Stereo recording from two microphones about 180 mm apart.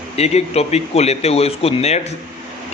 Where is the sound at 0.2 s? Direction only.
35° left (ahead or behind).